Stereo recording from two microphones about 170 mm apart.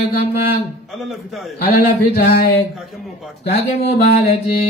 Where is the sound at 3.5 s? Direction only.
40° left (ahead or behind).